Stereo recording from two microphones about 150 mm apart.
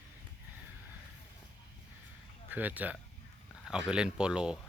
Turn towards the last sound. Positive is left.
turn(degrees=-5)  # may be behind; listen again after turning